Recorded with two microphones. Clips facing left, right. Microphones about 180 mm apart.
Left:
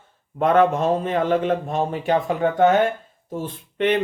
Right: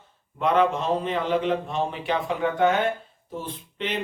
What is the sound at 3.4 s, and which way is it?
Speech, 55° left (ahead or behind).